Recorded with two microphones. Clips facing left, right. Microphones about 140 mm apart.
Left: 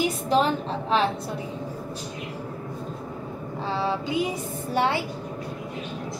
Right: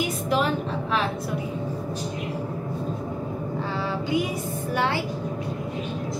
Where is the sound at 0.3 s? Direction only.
30° left (ahead or behind).